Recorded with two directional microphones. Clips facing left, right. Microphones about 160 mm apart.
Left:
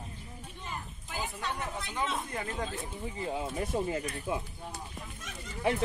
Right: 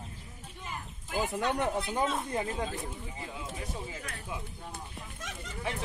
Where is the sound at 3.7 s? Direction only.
55° left (ahead or behind).